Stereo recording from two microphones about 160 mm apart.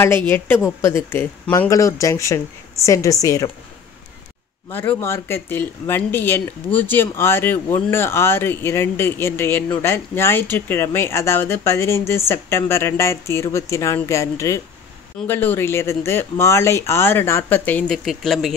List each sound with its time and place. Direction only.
0.0 s a woman's voice: 15° left (ahead or behind)
4.7 s speech: 15° left (ahead or behind)